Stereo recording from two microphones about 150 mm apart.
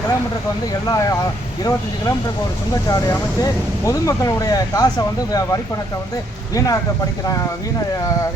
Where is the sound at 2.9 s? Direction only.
25° left (ahead or behind).